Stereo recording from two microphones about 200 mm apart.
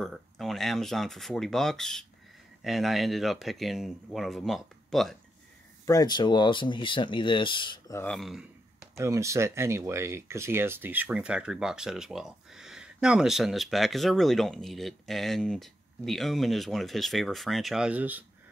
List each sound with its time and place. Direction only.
0.0 s speech: centre (ahead or behind)
5.9 s speech: 20° left (ahead or behind)
8.0 s speech: centre (ahead or behind)
8.9 s speech: 15° right (ahead or behind)